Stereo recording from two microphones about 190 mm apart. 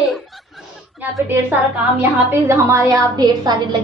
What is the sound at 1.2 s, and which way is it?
A woman's voice, 10° right (ahead or behind).